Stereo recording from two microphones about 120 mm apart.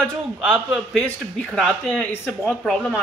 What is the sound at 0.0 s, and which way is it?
A woman's voice, 5° left (ahead or behind).